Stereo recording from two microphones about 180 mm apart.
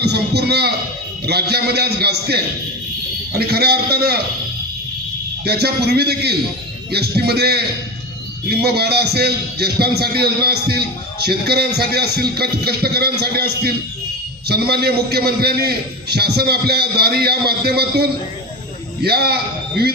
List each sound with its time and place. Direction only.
0.0 s a man's voice: 65° right (ahead or behind)
5.5 s a man's voice: 60° right (ahead or behind)